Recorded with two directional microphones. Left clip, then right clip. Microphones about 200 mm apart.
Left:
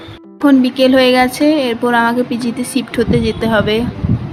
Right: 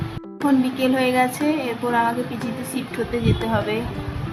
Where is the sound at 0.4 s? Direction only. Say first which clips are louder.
Left 9 dB; 25° left (ahead or behind).